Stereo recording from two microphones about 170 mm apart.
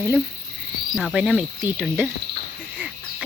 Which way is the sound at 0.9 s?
Centre (ahead or behind).